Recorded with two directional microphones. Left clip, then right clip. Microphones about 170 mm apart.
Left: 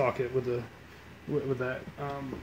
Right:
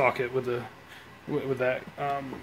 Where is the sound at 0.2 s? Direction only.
40° right (ahead or behind).